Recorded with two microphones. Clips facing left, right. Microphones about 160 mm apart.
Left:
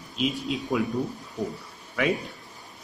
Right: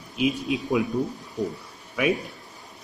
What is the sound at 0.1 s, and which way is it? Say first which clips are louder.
Speech: right 3 dB; 15° right (ahead or behind).